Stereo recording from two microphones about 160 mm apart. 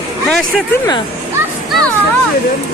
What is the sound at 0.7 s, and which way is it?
Speech, 25° left (ahead or behind).